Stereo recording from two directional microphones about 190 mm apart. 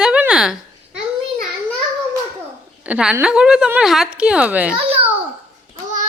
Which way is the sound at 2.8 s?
5° right (ahead or behind).